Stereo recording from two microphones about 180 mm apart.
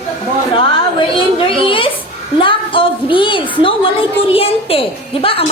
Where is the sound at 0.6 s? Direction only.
30° left (ahead or behind).